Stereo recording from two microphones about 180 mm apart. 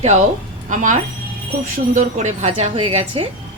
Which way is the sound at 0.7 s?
45° right (ahead or behind).